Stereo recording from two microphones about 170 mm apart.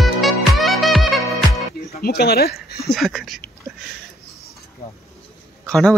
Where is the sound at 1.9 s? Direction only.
65° left (ahead or behind).